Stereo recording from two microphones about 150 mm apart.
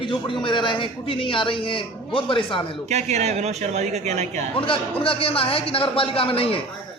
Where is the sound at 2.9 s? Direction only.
50° right (ahead or behind).